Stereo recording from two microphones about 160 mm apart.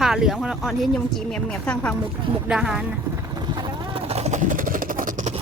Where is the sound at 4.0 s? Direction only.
40° right (ahead or behind).